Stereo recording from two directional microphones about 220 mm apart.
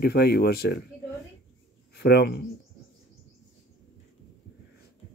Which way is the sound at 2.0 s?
50° left (ahead or behind).